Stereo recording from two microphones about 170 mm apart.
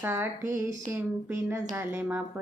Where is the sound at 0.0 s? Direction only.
15° right (ahead or behind).